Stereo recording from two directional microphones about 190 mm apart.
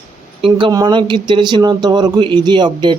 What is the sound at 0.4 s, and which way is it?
A man's voice, 25° right (ahead or behind).